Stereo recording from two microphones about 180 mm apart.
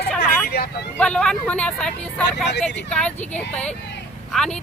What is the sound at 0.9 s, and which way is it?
Speech, 5° left (ahead or behind).